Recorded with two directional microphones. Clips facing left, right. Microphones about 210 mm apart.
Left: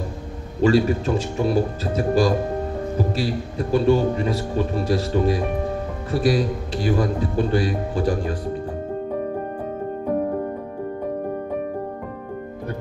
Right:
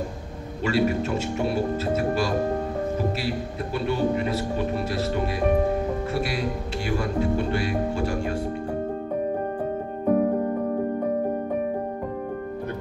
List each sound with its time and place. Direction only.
0.6 s speech: 30° left (ahead or behind)